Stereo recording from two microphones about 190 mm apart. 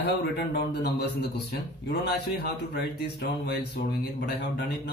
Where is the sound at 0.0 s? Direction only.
60° left (ahead or behind).